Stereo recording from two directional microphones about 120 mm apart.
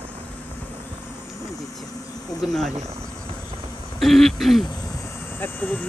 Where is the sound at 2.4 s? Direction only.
Centre (ahead or behind).